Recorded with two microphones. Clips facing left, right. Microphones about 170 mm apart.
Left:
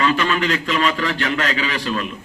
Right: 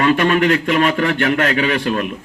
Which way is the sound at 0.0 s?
55° right (ahead or behind).